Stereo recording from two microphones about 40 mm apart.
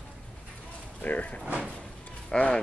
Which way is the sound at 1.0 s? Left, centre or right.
Left.